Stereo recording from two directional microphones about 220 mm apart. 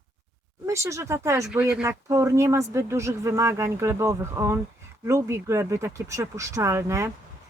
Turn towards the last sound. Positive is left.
turn(degrees=-15)  # may be behind; listen again after turning